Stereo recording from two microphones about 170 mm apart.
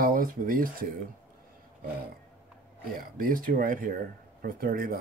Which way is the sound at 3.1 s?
55° right (ahead or behind).